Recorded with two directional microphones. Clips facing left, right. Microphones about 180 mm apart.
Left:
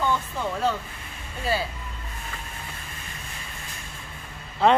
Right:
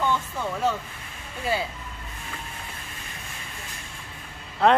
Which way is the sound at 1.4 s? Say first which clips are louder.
Even; 15° right (ahead or behind).